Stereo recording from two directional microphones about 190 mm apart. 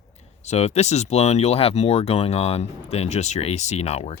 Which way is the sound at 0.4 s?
35° left (ahead or behind).